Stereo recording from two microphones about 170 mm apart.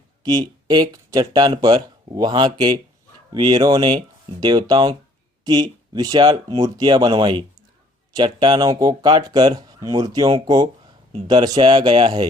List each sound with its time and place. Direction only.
0.2 s speech: 25° right (ahead or behind)